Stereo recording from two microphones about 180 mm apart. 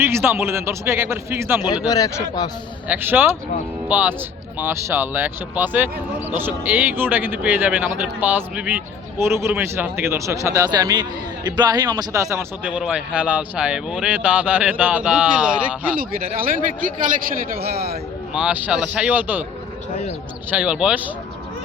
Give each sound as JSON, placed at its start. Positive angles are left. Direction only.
{"t": 0.0, "sound": "speech", "side_deg": -15}
{"t": 1.6, "sound": "speech", "side_deg": 20}
{"t": 2.8, "sound": "speech", "side_deg": -10}
{"t": 16.0, "sound": "speech", "side_deg": -50}
{"t": 18.3, "sound": "speech", "side_deg": -5}
{"t": 20.5, "sound": "speech", "side_deg": -5}